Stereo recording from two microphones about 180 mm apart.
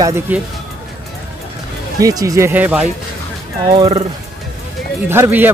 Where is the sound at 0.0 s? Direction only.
15° right (ahead or behind).